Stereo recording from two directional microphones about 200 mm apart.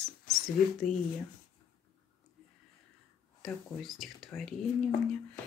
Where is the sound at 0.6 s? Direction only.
45° left (ahead or behind).